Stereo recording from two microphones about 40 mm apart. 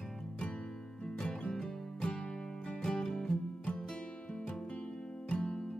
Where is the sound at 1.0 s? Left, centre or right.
Centre.